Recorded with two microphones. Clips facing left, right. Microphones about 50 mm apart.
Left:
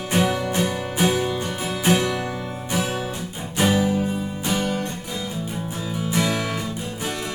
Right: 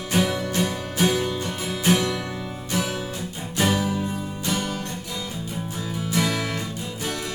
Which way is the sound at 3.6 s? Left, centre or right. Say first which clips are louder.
Left 3 dB; centre.